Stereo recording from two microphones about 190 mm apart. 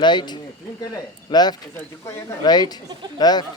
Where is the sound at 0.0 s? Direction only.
25° left (ahead or behind).